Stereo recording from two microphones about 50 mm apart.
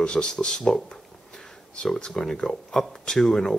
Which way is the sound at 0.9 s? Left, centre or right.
Centre.